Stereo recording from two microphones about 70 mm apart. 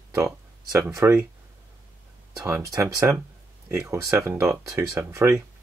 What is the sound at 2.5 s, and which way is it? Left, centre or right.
Speech, right.